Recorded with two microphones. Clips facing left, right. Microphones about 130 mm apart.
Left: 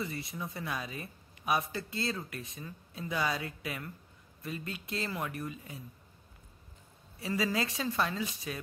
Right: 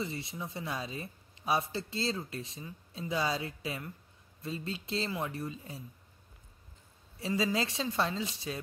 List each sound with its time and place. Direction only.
0.0 s speech: 25° right (ahead or behind)
7.2 s speech: 25° right (ahead or behind)